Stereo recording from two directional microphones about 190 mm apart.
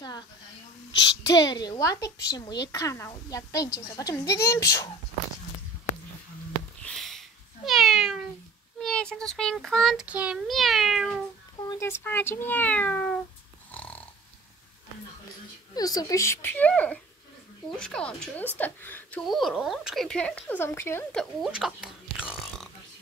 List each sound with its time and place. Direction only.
0.9 s a woman's voice: 20° left (ahead or behind)
6.8 s cat: 5° left (ahead or behind)
8.7 s a woman's voice: 5° left (ahead or behind)
11.7 s a woman's voice: 15° left (ahead or behind)
13.7 s dog: 10° left (ahead or behind)
15.7 s a woman's voice: 20° left (ahead or behind); by 22.3 s 5° right (ahead or behind)